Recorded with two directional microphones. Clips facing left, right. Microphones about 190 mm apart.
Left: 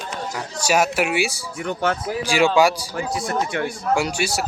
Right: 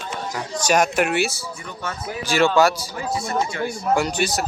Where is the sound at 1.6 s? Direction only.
85° left.